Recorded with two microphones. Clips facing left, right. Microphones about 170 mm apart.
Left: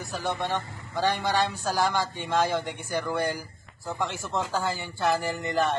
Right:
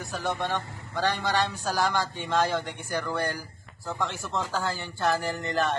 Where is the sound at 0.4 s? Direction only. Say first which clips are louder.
Left 1 dB; 15° left (ahead or behind).